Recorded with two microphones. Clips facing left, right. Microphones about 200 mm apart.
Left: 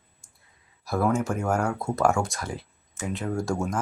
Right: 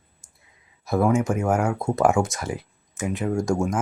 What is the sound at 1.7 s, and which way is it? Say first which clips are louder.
Speech: right 3 dB; 15° right (ahead or behind).